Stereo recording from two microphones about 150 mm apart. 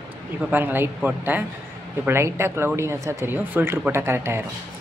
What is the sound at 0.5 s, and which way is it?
Speech, 15° right (ahead or behind).